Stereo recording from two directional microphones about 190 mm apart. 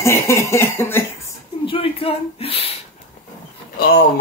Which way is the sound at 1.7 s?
30° left (ahead or behind).